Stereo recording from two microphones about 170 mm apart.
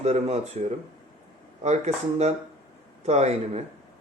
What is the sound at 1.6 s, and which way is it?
Speech, 40° right (ahead or behind).